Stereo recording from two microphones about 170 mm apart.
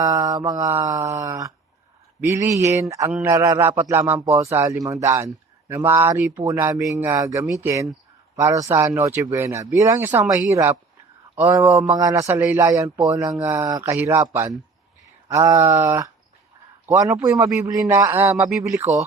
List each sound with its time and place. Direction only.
0.0 s mantra: 25° right (ahead or behind)
2.2 s a man's voice: 15° right (ahead or behind)
15.3 s mantra: 20° right (ahead or behind)
16.8 s a man's voice: 15° right (ahead or behind)
18.4 s a man's voice: centre (ahead or behind)
18.7 s a man's voice: 15° right (ahead or behind)